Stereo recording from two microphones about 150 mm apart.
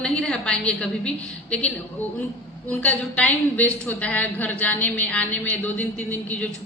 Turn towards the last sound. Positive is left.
turn(degrees=10)  # may be behind; listen again after turning